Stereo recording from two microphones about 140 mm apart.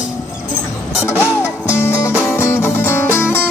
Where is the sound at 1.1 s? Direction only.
20° left (ahead or behind).